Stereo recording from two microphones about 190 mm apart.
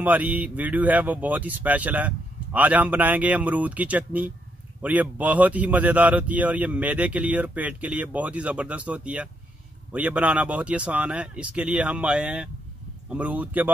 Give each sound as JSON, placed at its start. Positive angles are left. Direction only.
{"t": 0.0, "sound": "speech", "side_deg": -10}